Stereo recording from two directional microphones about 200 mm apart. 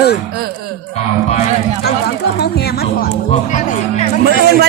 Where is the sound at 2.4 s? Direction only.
55° left (ahead or behind).